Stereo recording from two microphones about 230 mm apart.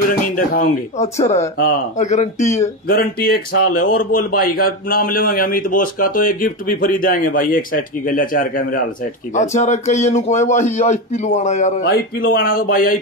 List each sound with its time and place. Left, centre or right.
0.4 s a man's voice: left
11.8 s a man's voice: left